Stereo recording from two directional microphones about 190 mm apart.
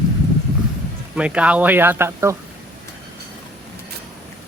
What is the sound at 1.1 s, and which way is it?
Speech, 5° right (ahead or behind).